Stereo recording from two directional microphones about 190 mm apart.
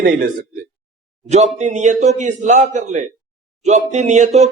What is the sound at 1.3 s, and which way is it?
A man's voice, 35° right (ahead or behind).